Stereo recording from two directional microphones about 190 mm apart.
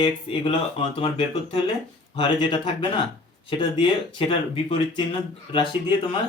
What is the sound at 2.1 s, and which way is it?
Speech, 25° left (ahead or behind).